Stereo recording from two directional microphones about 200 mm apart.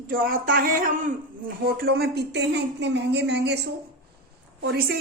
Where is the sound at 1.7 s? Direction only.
50° right (ahead or behind).